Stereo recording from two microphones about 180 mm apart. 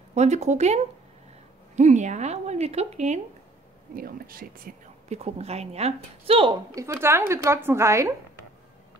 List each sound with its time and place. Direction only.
0.1 s a woman's voice: 40° right (ahead or behind)
1.8 s a woman's voice: 40° right (ahead or behind)
3.9 s speech: 55° right (ahead or behind)
5.2 s a woman's voice: 35° right (ahead or behind); by 8.1 s 15° right (ahead or behind)